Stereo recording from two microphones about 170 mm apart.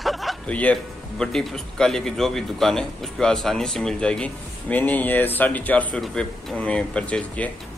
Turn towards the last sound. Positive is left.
turn(degrees=5)  # may be behind; listen again after turning